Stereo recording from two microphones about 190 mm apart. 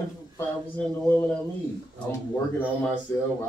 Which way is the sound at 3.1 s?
15° left (ahead or behind).